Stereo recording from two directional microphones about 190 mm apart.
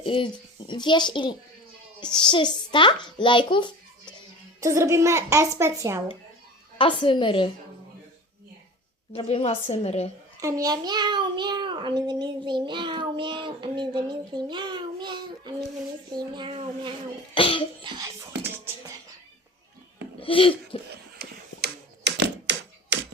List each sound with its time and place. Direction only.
0.0 s a child's voice: 25° left (ahead or behind)
4.6 s a child's voice: 15° right (ahead or behind)
6.7 s a child's voice: 25° left (ahead or behind)
9.1 s a woman's voice: 30° left (ahead or behind)
10.4 s a child's voice: 20° right (ahead or behind)
17.3 s a child's voice: 30° left (ahead or behind)
17.8 s music: 20° right (ahead or behind)
20.1 s speech: 30° left (ahead or behind)
20.9 s typewriter: 60° right (ahead or behind)